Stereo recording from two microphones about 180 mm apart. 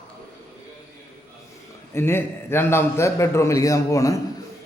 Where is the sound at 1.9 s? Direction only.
15° left (ahead or behind).